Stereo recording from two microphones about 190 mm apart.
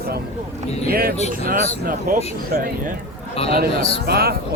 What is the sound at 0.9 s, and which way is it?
Speech, 50° right (ahead or behind).